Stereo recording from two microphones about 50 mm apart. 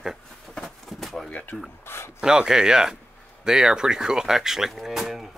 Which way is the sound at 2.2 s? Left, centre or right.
Centre.